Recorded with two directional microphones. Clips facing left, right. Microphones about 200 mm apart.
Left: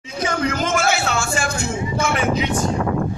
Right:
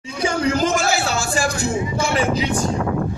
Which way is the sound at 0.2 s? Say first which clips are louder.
Right 3 dB; 30° right (ahead or behind).